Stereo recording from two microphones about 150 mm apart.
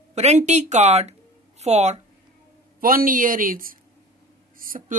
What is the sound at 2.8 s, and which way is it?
Speech, 70° right (ahead or behind).